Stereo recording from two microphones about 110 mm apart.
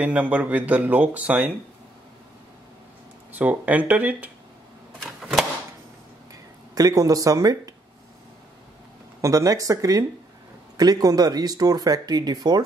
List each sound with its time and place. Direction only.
0.0 s speech: 15° right (ahead or behind)
3.3 s speech: 15° right (ahead or behind)
6.7 s speech: 35° right (ahead or behind)
9.2 s speech: 30° right (ahead or behind)